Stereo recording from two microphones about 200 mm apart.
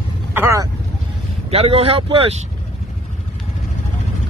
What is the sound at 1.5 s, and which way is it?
Speech, 30° right (ahead or behind).